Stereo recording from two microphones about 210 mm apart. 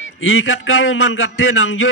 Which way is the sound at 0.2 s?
70° left (ahead or behind).